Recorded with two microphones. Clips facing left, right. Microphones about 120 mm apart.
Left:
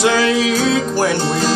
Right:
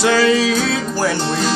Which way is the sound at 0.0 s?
15° left (ahead or behind).